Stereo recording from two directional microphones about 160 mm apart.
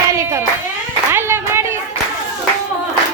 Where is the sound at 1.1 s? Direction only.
15° right (ahead or behind).